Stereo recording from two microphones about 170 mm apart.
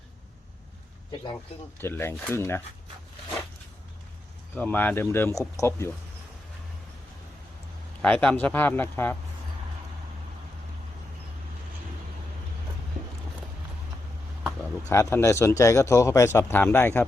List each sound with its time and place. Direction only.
1.8 s a man's voice: 15° left (ahead or behind)
4.5 s a man's voice: 10° left (ahead or behind)
8.0 s a man's voice: 5° left (ahead or behind)
14.8 s a man's voice: 15° left (ahead or behind)